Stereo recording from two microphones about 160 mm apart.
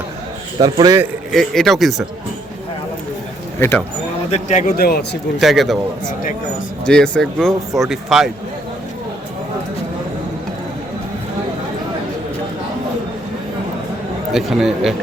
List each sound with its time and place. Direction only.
0.6 s speech: 25° right (ahead or behind)
1.3 s speech: centre (ahead or behind)
3.6 s speech: 15° left (ahead or behind)
4.3 s speech: 45° left (ahead or behind)
4.8 s a man's voice: 75° left (ahead or behind)
5.4 s speech: centre (ahead or behind)
6.8 s speech: 5° left (ahead or behind)
14.3 s speech: centre (ahead or behind)